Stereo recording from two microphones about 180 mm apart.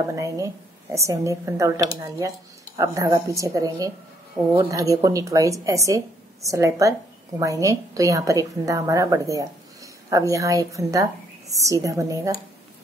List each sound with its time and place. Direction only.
0.1 s a woman's voice: 15° right (ahead or behind)